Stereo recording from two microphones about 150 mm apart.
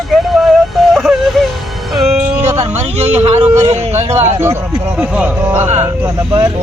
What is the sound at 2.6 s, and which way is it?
Speech, 45° right (ahead or behind).